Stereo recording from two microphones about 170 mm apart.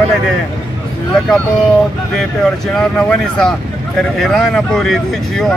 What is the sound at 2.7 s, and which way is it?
Speech, 5° left (ahead or behind).